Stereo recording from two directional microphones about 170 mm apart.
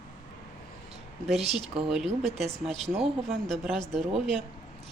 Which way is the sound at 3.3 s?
Centre (ahead or behind).